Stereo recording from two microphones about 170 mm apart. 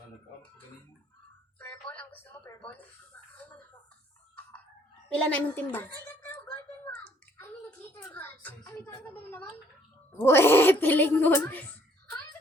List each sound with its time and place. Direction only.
1.5 s a sound: 10° left (ahead or behind)
5.0 s a woman's voice: 5° left (ahead or behind)
6.9 s bathtub: 10° left (ahead or behind)
10.1 s speech: 15° left (ahead or behind)